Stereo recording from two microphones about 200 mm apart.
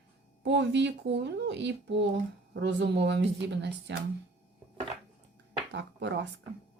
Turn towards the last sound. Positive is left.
turn(degrees=-60)  # may be behind; listen again after turning